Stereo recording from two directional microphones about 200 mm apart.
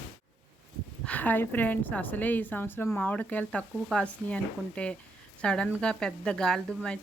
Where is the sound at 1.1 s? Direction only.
10° left (ahead or behind).